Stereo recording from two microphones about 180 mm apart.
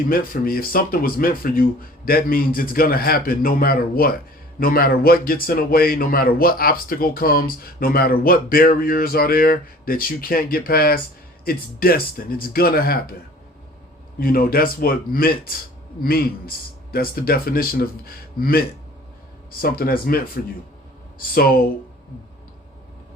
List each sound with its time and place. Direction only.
0.1 s a man's voice: 55° left (ahead or behind)
14.2 s a man's voice: 55° left (ahead or behind)